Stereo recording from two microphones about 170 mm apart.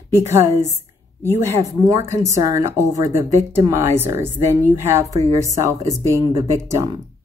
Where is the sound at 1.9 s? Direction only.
20° right (ahead or behind).